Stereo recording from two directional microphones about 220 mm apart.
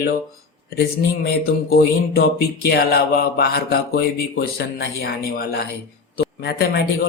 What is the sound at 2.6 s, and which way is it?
Speech, 45° left (ahead or behind).